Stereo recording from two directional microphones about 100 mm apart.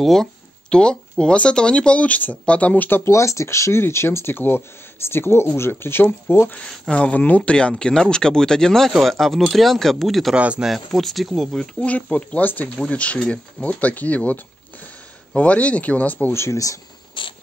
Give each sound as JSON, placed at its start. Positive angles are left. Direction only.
{"t": 0.0, "sound": "speech", "side_deg": 5}
{"t": 6.5, "sound": "speech", "side_deg": 10}
{"t": 10.3, "sound": "speech", "side_deg": -10}
{"t": 10.7, "sound": "speech", "side_deg": 0}
{"t": 17.2, "sound": "insect", "side_deg": 55}